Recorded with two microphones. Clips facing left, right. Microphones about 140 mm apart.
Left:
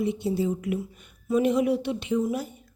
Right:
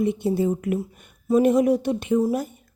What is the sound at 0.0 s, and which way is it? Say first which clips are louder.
A woman's voice: right 4 dB; 50° right (ahead or behind).